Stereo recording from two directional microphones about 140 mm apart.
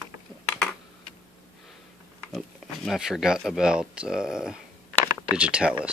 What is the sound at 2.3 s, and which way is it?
Speech, centre (ahead or behind).